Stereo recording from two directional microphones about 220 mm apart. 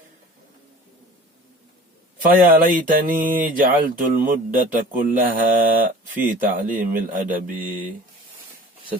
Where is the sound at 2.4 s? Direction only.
40° right (ahead or behind).